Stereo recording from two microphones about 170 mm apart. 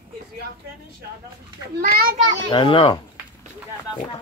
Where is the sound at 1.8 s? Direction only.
60° right (ahead or behind).